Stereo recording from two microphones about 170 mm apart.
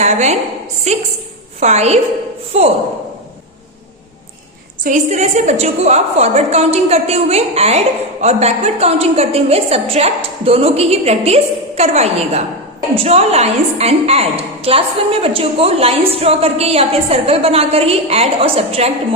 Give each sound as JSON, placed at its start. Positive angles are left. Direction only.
{"t": 0.0, "sound": "a woman's voice", "side_deg": -40}
{"t": 1.5, "sound": "a woman's voice", "side_deg": -40}
{"t": 4.8, "sound": "a woman's voice", "side_deg": -45}